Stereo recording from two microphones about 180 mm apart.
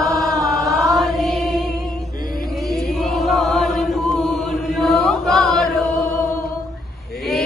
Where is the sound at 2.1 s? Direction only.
55° left (ahead or behind).